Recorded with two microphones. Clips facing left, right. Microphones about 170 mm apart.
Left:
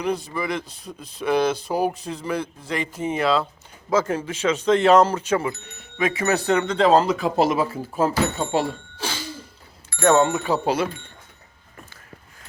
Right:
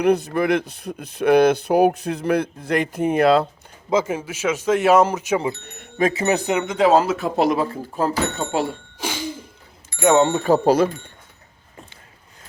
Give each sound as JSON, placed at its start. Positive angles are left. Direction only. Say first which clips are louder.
{"t": 0.3, "sound": "speech", "louder": "right 7 dB", "side_deg": -60}
{"t": 3.8, "sound": "speech", "louder": "right 1 dB", "side_deg": -10}
{"t": 9.0, "sound": "a sound", "louder": "right 6 dB", "side_deg": -15}
{"t": 9.9, "sound": "speech", "louder": "right 1 dB", "side_deg": -20}
{"t": 10.3, "sound": "speech", "louder": "right 6 dB", "side_deg": -40}